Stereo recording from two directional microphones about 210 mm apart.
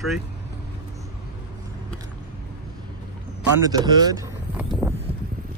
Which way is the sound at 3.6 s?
20° right (ahead or behind).